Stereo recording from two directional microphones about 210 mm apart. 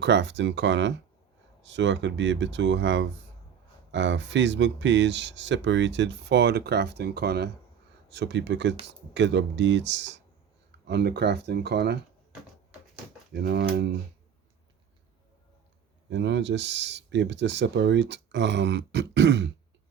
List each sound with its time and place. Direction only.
0.0 s speech: 55° right (ahead or behind)
13.3 s speech: 50° right (ahead or behind)
16.0 s speech: 60° right (ahead or behind)